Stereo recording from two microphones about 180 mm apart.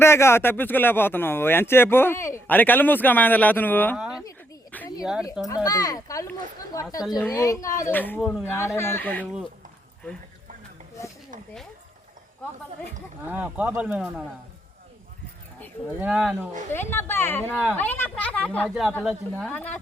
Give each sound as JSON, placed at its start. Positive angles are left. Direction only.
{"t": 0.0, "sound": "speech", "side_deg": 15}
{"t": 3.9, "sound": "speech", "side_deg": -5}
{"t": 4.2, "sound": "a sound", "side_deg": 15}
{"t": 5.6, "sound": "speech", "side_deg": 20}
{"t": 8.2, "sound": "speech", "side_deg": -5}
{"t": 8.4, "sound": "speech", "side_deg": 15}
{"t": 13.2, "sound": "speech", "side_deg": -10}
{"t": 16.0, "sound": "speech", "side_deg": -5}
{"t": 16.9, "sound": "speech", "side_deg": 10}
{"t": 17.5, "sound": "speech", "side_deg": -5}
{"t": 17.7, "sound": "speech", "side_deg": 10}
{"t": 18.7, "sound": "speech", "side_deg": -5}